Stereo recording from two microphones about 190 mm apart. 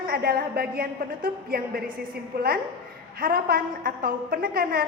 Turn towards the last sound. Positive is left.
turn(degrees=-50)  # may be behind; listen again after turning